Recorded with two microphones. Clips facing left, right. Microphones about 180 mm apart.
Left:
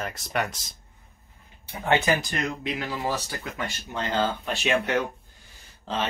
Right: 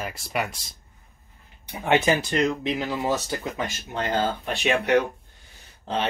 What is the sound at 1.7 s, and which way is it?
Speech, 20° right (ahead or behind).